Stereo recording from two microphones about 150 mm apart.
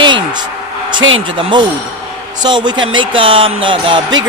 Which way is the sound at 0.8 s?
30° right (ahead or behind).